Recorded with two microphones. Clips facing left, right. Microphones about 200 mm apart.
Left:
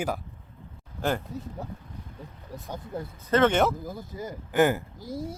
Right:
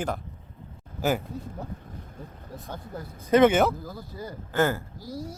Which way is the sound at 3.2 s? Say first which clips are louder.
Right 4 dB; 10° right (ahead or behind).